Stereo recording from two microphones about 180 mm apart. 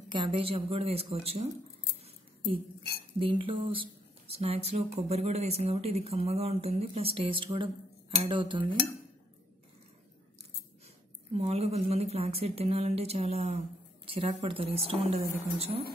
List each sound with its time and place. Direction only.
0.1 s speech: 30° right (ahead or behind)
3.2 s speech: 30° right (ahead or behind)
11.3 s speech: 35° right (ahead or behind)